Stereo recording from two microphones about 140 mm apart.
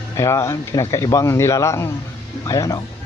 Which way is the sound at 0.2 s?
20° left (ahead or behind).